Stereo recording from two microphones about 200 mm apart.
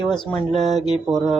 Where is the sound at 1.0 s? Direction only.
Centre (ahead or behind).